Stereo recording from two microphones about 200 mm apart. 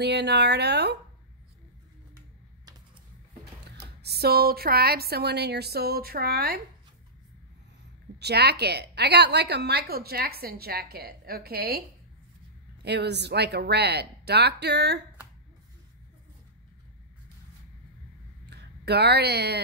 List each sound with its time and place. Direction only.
0.0 s speech: 55° right (ahead or behind)
3.6 s a woman's voice: 55° right (ahead or behind)
8.2 s a woman's voice: 55° right (ahead or behind)
12.8 s speech: 55° right (ahead or behind)
18.5 s speech: 55° right (ahead or behind)